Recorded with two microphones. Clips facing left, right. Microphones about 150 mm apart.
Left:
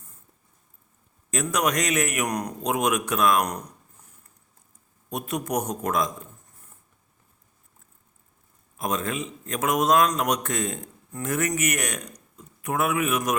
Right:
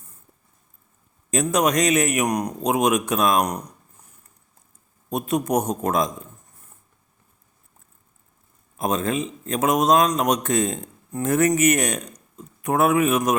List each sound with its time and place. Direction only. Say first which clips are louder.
1.3 s a man's voice: right 5 dB; 25° right (ahead or behind)
5.0 s a man's voice: right 6 dB; 25° right (ahead or behind)
8.8 s a man's voice: right 5 dB; 30° right (ahead or behind)